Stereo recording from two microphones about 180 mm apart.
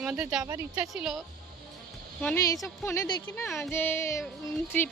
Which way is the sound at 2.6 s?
15° left (ahead or behind).